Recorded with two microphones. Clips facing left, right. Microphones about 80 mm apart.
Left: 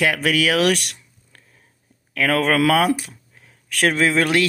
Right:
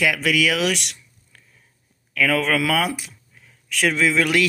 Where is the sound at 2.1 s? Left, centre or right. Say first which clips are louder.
Left 1 dB; left.